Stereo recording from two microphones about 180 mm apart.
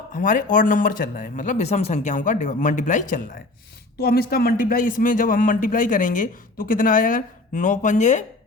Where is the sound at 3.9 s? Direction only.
60° left (ahead or behind); by 8.2 s 40° left (ahead or behind).